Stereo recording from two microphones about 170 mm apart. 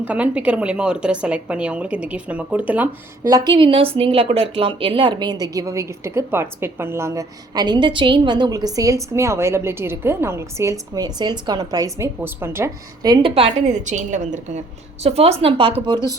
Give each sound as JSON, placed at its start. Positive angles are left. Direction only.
{"t": 0.0, "sound": "a woman's voice", "side_deg": -10}
{"t": 3.2, "sound": "a woman's voice", "side_deg": -25}
{"t": 13.3, "sound": "a woman's voice", "side_deg": -45}